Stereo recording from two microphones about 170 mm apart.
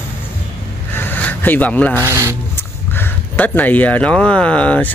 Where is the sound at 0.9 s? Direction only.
10° left (ahead or behind).